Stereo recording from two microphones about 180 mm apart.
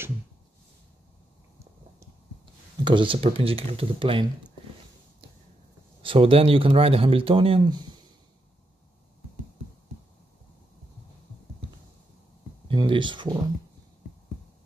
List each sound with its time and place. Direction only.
2.8 s speech: 25° right (ahead or behind)
6.0 s speech: 30° right (ahead or behind)
12.6 s speech: 25° right (ahead or behind)